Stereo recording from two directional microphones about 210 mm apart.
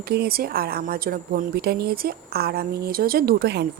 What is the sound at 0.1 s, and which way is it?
A woman's voice, 50° right (ahead or behind).